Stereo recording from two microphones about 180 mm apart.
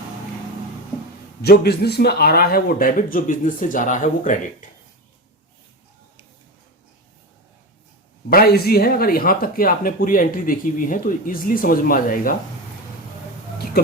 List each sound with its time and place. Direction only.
1.4 s speech: 65° left (ahead or behind); by 4.7 s 45° left (ahead or behind)
8.3 s speech: 60° left (ahead or behind)